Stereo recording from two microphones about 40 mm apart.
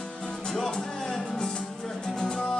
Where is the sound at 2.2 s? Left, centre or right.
Centre.